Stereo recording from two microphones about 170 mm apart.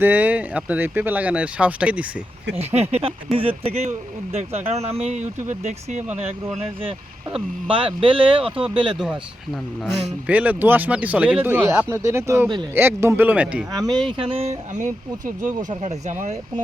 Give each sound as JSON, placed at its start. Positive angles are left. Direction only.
{"t": 0.0, "sound": "speech", "side_deg": -10}
{"t": 2.6, "sound": "speech", "side_deg": -40}
{"t": 8.4, "sound": "speech", "side_deg": -5}
{"t": 8.7, "sound": "speech", "side_deg": -30}
{"t": 10.2, "sound": "speech", "side_deg": -10}
{"t": 14.1, "sound": "speech", "side_deg": -30}